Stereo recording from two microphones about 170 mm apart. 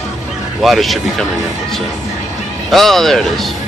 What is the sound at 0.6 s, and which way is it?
Speech, centre (ahead or behind).